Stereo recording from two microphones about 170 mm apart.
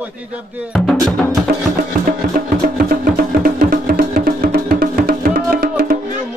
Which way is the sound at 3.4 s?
60° right (ahead or behind).